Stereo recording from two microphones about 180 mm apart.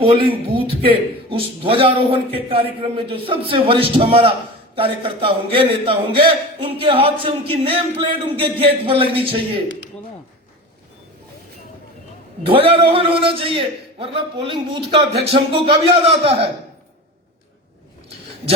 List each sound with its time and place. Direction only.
0.0 s a man's voice: 30° right (ahead or behind)
12.5 s a man's voice: 30° right (ahead or behind)